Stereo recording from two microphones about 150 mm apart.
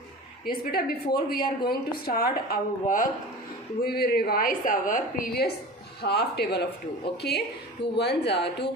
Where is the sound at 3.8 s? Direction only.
90° left.